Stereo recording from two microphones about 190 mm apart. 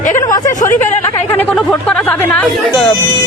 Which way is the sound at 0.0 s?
45° left (ahead or behind).